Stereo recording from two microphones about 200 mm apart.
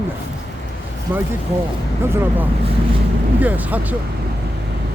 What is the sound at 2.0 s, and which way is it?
Speech, 10° right (ahead or behind).